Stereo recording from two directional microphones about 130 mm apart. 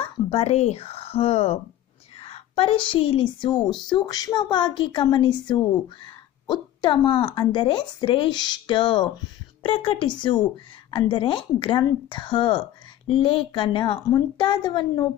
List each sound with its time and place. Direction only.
0.3 s a woman's voice: 50° left (ahead or behind); by 15.0 s 35° left (ahead or behind)